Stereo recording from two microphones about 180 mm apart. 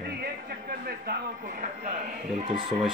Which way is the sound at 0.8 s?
50° right (ahead or behind).